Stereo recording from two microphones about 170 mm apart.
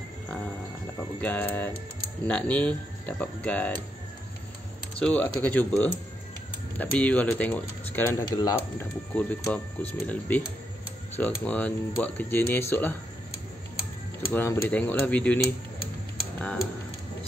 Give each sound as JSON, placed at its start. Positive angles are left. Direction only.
{"t": 1.2, "sound": "speech", "side_deg": 10}
{"t": 4.9, "sound": "speech", "side_deg": 10}
{"t": 6.8, "sound": "speech", "side_deg": 10}
{"t": 14.3, "sound": "speech", "side_deg": 15}